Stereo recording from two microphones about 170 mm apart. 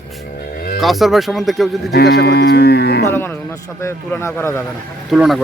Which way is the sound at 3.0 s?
15° left (ahead or behind).